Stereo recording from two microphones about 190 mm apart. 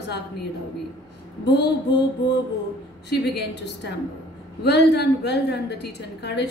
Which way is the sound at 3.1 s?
60° left (ahead or behind).